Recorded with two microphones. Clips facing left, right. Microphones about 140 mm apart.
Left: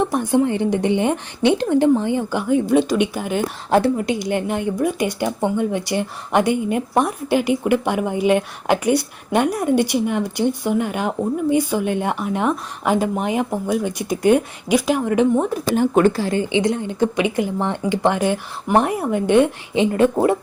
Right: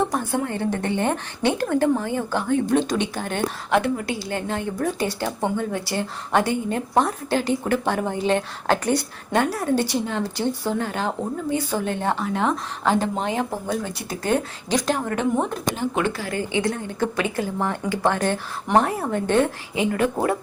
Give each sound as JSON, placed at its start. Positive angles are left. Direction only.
{"t": 0.0, "sound": "speech", "side_deg": 15}
{"t": 3.7, "sound": "speech", "side_deg": 35}
{"t": 3.9, "sound": "speech", "side_deg": 20}
{"t": 15.7, "sound": "speech", "side_deg": 50}
{"t": 16.2, "sound": "speech", "side_deg": 25}
{"t": 19.7, "sound": "speech", "side_deg": 25}